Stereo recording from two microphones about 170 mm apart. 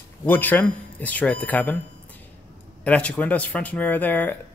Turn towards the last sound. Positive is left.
turn(degrees=10)  # may be behind; listen again after turning